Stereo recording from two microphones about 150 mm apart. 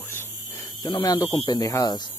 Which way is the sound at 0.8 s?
30° left (ahead or behind).